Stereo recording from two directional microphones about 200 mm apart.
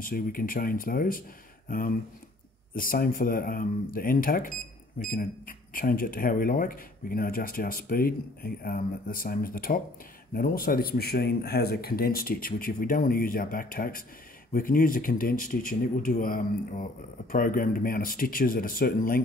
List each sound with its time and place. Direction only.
0.0 s speech: 45° left (ahead or behind)